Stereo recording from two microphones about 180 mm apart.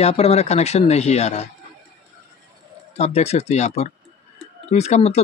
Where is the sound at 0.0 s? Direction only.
35° left (ahead or behind).